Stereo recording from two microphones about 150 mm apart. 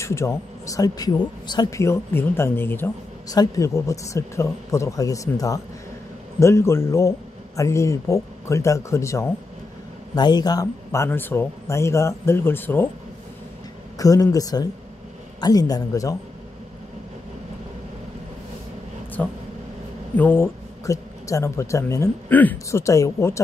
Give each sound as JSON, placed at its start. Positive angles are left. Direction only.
{"t": 0.0, "sound": "speech", "side_deg": 20}
{"t": 13.9, "sound": "speech", "side_deg": 25}
{"t": 19.2, "sound": "speech", "side_deg": 10}